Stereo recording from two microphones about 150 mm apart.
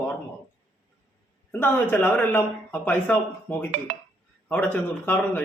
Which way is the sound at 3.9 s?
50° right (ahead or behind).